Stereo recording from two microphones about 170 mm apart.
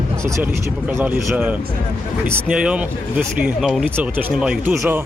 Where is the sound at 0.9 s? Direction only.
10° right (ahead or behind).